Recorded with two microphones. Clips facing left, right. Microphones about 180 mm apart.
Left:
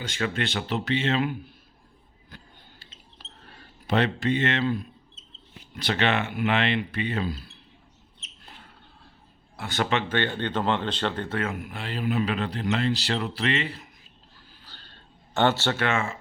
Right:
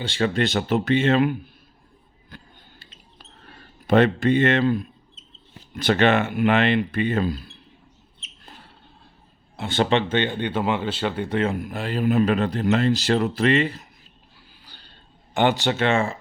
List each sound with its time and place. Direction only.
0.0 s speech: 30° right (ahead or behind); by 1.3 s 50° right (ahead or behind)
2.3 s a sound: 55° right (ahead or behind)
3.8 s speech: 50° right (ahead or behind)
9.6 s speech: 25° right (ahead or behind); by 11.3 s 10° right (ahead or behind)
11.3 s speech: 30° right (ahead or behind)
14.6 s a sound: 10° right (ahead or behind)
15.4 s speech: 15° right (ahead or behind); by 16.1 s 30° right (ahead or behind)